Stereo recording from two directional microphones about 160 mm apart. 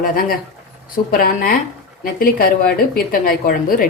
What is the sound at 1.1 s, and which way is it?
A woman's voice, 65° left (ahead or behind).